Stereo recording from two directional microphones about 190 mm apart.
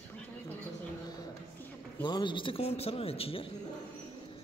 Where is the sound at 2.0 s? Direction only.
25° left (ahead or behind).